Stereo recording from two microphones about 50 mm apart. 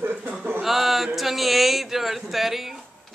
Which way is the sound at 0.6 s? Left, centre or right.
Centre.